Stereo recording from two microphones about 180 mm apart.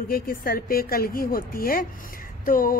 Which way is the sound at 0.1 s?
55° left (ahead or behind).